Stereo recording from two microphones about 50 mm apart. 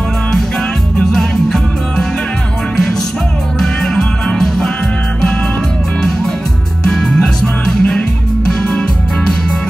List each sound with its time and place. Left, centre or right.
1.1 s music: centre
3.5 s music: centre
6.8 s music: centre